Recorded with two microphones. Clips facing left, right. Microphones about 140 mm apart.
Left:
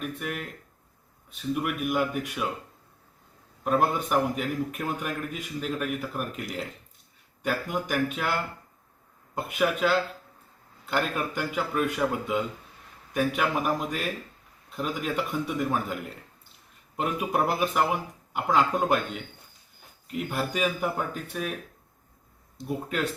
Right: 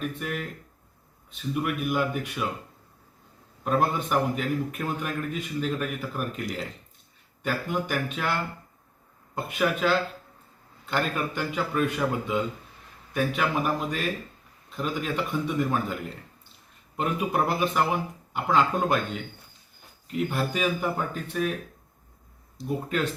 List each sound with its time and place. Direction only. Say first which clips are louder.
0.0 s a man's voice: right 2 dB; centre (ahead or behind)
3.6 s a man's voice: even; 5° left (ahead or behind)
17.0 s a man's voice: right 1 dB; 5° left (ahead or behind)
22.5 s a man's voice: right 2 dB; 5° left (ahead or behind)